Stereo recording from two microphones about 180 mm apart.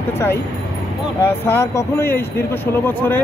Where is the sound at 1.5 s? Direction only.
15° left (ahead or behind).